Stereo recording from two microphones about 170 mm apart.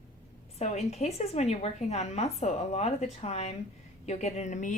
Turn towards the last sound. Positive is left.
turn(degrees=45)  # may be behind; listen again after turning